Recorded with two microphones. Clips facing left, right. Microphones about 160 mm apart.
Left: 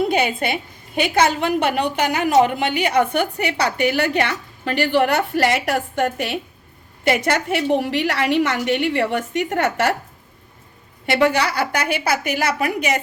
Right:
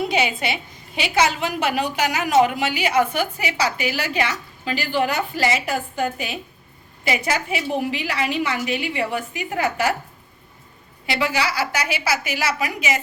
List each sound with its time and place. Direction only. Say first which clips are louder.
0.0 s a woman's voice: left 3 dB; 50° left (ahead or behind); by 9.9 s 75° left (ahead or behind)
11.0 s a woman's voice: left 5 dB; 60° left (ahead or behind)